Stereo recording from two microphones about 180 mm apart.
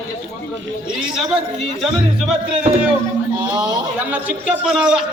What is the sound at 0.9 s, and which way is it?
Speech, 5° right (ahead or behind).